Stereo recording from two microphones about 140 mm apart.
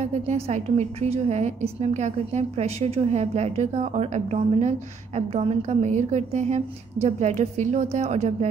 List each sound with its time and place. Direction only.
0.0 s a woman's voice: 55° right (ahead or behind)